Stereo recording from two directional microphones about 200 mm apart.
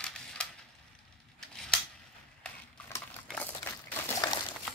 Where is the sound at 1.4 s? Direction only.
5° left (ahead or behind).